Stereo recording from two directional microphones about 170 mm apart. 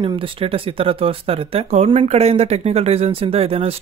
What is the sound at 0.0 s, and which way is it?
Speech, 35° right (ahead or behind).